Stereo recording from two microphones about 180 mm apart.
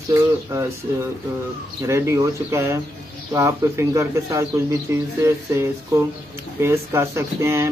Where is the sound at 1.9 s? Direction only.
15° right (ahead or behind).